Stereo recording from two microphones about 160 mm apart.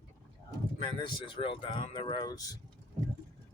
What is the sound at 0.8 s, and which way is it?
Speech, 30° left (ahead or behind).